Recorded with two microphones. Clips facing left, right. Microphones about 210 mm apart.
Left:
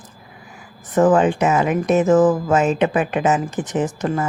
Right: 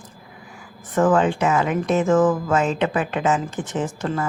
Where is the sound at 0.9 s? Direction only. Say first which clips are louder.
Left 3 dB; 20° left (ahead or behind).